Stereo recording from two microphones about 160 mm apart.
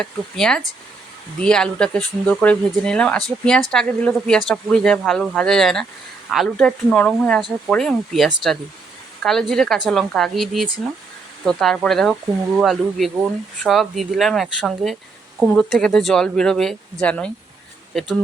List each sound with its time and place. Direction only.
0.0 s speech: 5° left (ahead or behind)